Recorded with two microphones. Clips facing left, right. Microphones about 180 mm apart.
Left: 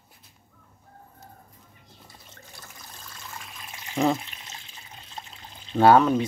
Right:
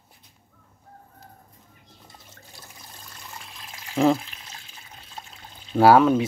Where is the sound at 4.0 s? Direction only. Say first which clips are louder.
Right 4 dB; centre (ahead or behind).